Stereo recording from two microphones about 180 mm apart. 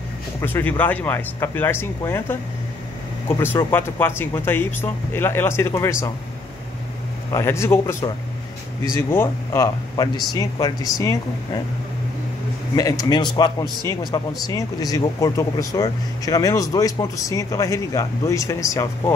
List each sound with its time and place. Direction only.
0.4 s speech: 10° left (ahead or behind)
7.3 s speech: 15° left (ahead or behind)
9.1 s speech: 15° left (ahead or behind)
12.7 s speech: 20° left (ahead or behind)